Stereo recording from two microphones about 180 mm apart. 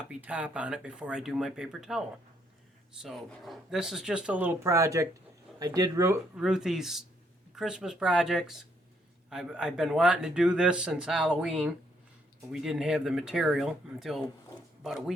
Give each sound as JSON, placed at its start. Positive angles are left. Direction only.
{"t": 0.1, "sound": "speech", "side_deg": -10}
{"t": 6.3, "sound": "speech", "side_deg": -5}